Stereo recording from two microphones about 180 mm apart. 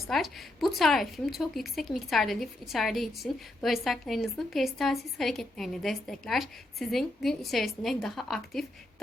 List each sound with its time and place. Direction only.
0.1 s a woman's voice: centre (ahead or behind)